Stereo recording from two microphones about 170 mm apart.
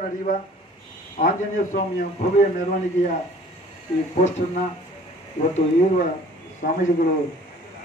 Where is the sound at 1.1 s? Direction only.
50° left (ahead or behind).